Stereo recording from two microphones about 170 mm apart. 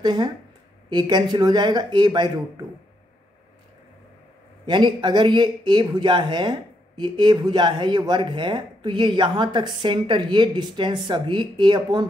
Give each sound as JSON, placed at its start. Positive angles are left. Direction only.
{"t": 0.0, "sound": "speech", "side_deg": -25}
{"t": 4.6, "sound": "speech", "side_deg": -25}